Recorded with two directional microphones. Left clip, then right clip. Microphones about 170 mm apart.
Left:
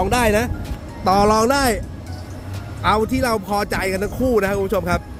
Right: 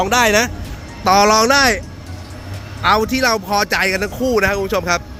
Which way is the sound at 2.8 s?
5° left (ahead or behind).